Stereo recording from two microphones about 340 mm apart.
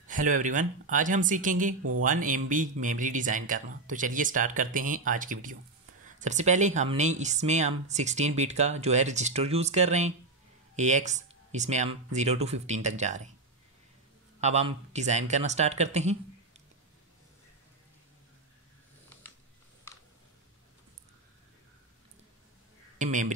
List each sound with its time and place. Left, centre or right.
0.0 s speech: right
1.8 s speech: right
2.0 s speech: right
14.4 s speech: centre
22.9 s speech: right